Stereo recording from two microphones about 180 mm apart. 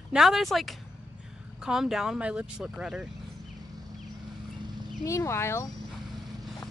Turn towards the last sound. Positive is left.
turn(degrees=15)  # may be behind; listen again after turning